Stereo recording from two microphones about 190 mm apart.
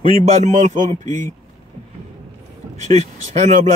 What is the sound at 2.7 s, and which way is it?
Speech, 35° right (ahead or behind).